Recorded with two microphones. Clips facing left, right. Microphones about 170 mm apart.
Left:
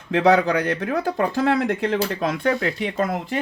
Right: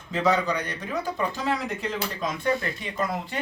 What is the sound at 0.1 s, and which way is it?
Speech, 65° left (ahead or behind).